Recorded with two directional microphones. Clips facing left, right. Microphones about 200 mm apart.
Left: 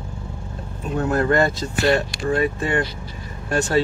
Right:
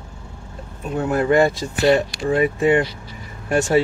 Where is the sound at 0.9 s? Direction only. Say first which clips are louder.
Right 2 dB; 10° right (ahead or behind).